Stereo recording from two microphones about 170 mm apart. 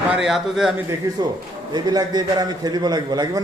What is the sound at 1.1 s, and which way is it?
A man's voice, 15° right (ahead or behind).